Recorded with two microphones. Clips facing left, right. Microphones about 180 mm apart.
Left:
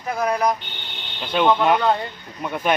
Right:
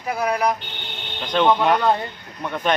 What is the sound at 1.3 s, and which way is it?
Speech, 5° left (ahead or behind).